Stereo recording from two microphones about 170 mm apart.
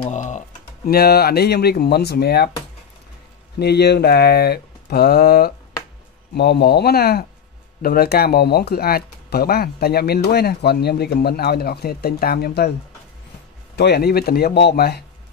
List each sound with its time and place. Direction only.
0.1 s speech: 45° left (ahead or behind)
0.8 s speech: 65° left (ahead or behind)
3.5 s speech: 70° left (ahead or behind)
6.3 s speech: 75° left (ahead or behind)
13.7 s speech: 70° left (ahead or behind)